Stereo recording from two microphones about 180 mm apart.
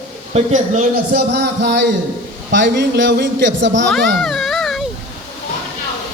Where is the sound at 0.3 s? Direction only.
45° right (ahead or behind).